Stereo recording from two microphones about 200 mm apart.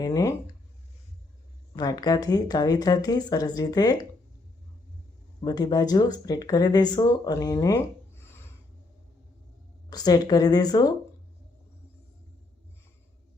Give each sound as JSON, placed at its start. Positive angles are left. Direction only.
{"t": 0.0, "sound": "speech", "side_deg": 15}
{"t": 1.7, "sound": "speech", "side_deg": 20}
{"t": 5.4, "sound": "speech", "side_deg": 20}
{"t": 9.9, "sound": "speech", "side_deg": 20}